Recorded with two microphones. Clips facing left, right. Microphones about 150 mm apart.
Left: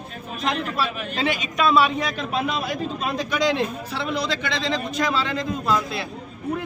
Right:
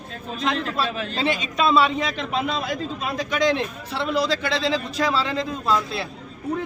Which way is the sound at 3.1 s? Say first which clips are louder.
Right 1 dB; 20° right (ahead or behind).